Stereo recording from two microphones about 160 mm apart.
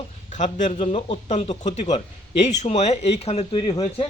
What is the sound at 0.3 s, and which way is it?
Speech, 50° left (ahead or behind).